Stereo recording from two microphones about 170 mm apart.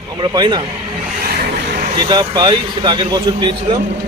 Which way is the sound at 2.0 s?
25° right (ahead or behind).